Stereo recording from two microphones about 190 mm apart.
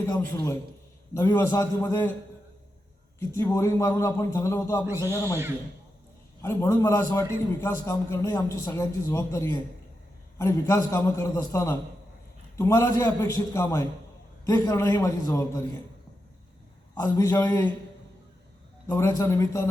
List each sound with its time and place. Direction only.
0.0 s a man's voice: 15° left (ahead or behind)
3.2 s a man's voice: 15° left (ahead or behind)
6.4 s a man's voice: 15° left (ahead or behind)
16.9 s a man's voice: 15° left (ahead or behind)
18.9 s a man's voice: 15° left (ahead or behind)